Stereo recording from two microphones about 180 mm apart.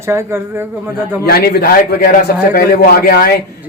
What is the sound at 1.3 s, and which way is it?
A man's voice, 60° left (ahead or behind).